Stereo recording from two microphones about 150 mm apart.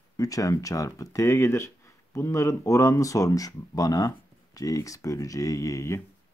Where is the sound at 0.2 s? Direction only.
25° left (ahead or behind).